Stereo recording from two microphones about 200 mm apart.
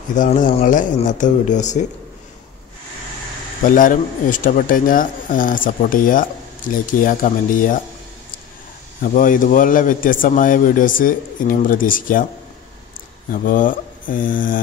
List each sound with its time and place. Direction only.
0.1 s speech: 40° left (ahead or behind)
3.6 s speech: 40° left (ahead or behind)
9.0 s speech: 40° left (ahead or behind)
13.3 s speech: 45° left (ahead or behind)